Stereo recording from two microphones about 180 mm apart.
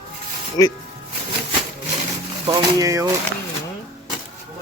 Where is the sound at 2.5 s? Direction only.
20° right (ahead or behind).